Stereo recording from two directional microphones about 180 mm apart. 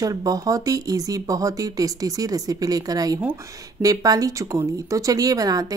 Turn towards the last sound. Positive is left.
turn(degrees=-20)  # may be behind; listen again after turning